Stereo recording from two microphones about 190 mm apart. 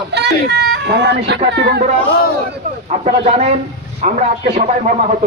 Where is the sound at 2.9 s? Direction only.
35° right (ahead or behind).